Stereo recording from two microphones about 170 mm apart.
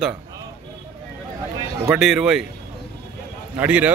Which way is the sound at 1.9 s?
Centre (ahead or behind).